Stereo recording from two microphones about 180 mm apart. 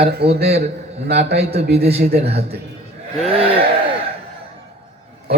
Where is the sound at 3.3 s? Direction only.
30° right (ahead or behind).